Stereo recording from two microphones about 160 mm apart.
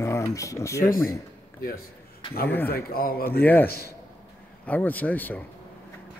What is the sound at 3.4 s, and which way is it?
Speech, 10° left (ahead or behind).